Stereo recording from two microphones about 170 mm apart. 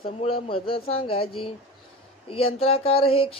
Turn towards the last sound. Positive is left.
turn(degrees=35)  # may be behind; listen again after turning